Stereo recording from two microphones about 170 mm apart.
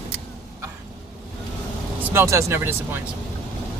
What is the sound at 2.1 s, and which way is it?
Speech, 15° right (ahead or behind).